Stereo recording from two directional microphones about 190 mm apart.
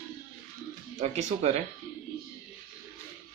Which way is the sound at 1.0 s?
40° right (ahead or behind).